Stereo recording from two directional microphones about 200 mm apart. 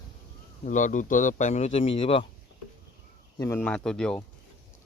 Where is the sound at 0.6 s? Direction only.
40° left (ahead or behind).